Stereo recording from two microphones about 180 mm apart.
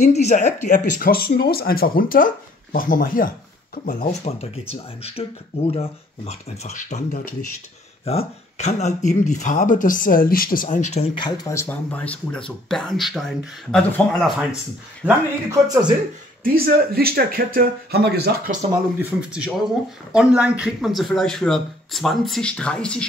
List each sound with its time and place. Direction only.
0.0 s speech: 40° left (ahead or behind)
11.1 s speech: 20° left (ahead or behind); by 14.3 s 5° left (ahead or behind)
15.0 s speech: 10° right (ahead or behind)
16.4 s speech: 55° right (ahead or behind)
18.7 s speech: 10° right (ahead or behind); by 23.0 s 5° left (ahead or behind)